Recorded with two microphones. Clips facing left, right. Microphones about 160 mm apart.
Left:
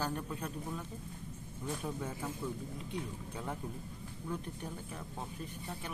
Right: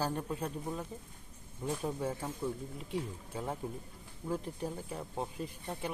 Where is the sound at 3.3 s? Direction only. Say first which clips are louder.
Right 4 dB; 25° right (ahead or behind).